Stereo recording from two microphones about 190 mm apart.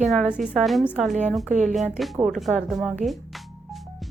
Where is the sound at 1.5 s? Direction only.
40° right (ahead or behind).